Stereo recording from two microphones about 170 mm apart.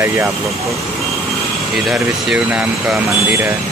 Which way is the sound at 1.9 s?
Centre (ahead or behind).